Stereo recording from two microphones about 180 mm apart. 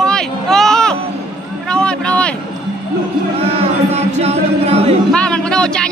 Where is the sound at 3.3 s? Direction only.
35° right (ahead or behind).